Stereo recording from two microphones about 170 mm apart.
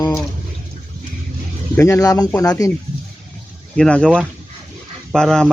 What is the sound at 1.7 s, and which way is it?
Speech, 15° left (ahead or behind).